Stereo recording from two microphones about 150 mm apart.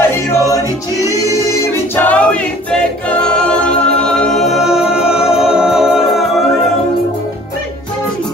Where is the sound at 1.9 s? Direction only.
10° left (ahead or behind).